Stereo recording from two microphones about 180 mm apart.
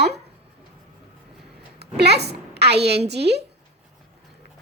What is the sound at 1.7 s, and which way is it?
A woman's voice, 65° right (ahead or behind).